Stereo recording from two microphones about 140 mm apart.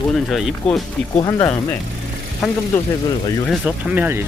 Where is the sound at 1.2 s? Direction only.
30° left (ahead or behind).